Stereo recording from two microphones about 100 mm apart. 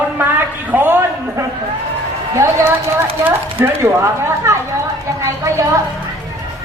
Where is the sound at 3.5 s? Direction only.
20° right (ahead or behind).